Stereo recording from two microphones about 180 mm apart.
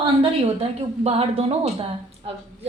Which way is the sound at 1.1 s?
35° right (ahead or behind).